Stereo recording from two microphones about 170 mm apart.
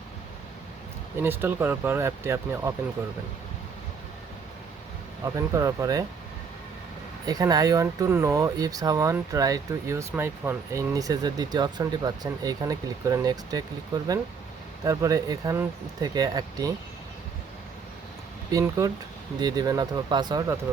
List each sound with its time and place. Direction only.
1.2 s speech: 15° right (ahead or behind)
5.2 s speech: 20° right (ahead or behind)
7.3 s speech: 20° right (ahead or behind)
18.5 s speech: 20° right (ahead or behind)